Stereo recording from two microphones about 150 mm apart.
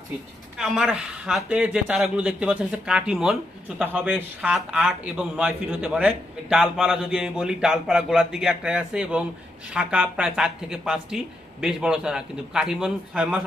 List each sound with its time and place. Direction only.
0.6 s speech: 5° right (ahead or behind)